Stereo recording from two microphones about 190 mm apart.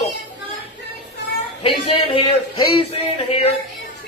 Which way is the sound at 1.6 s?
30° left (ahead or behind).